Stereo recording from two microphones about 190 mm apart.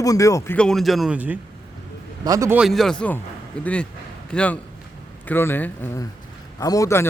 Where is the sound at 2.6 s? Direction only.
Centre (ahead or behind).